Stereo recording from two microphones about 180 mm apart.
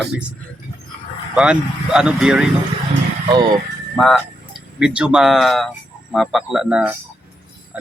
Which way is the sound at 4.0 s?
Centre (ahead or behind).